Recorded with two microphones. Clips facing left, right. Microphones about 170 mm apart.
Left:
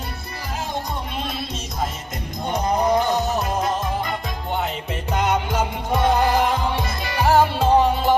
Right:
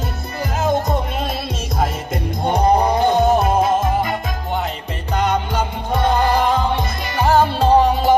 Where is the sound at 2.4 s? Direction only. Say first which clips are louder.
Right 5 dB; 60° right (ahead or behind).